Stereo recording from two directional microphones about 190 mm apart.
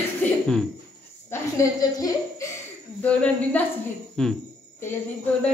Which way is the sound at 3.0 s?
5° left (ahead or behind).